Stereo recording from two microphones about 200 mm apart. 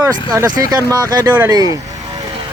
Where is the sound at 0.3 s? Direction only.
20° right (ahead or behind).